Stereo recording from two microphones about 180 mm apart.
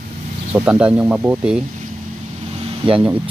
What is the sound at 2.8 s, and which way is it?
Speech, 30° right (ahead or behind).